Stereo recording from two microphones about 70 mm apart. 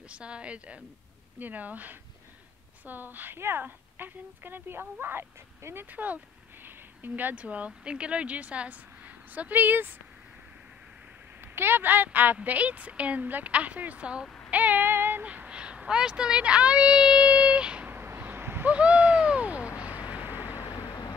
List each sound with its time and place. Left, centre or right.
0.1 s a woman's voice: centre; by 5.9 s right
5.9 s a woman's voice: right
11.4 s a woman's voice: right
14.5 s female singing: right
15.2 s a woman's voice: centre
17.8 s a sound: right
18.7 s owl: centre
20.1 s vehicle: right
20.5 s vehicle: left